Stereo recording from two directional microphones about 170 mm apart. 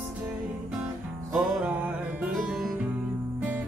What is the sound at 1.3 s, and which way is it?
Music, 5° right (ahead or behind).